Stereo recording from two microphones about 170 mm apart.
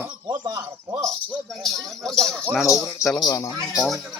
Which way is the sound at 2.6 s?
15° left (ahead or behind).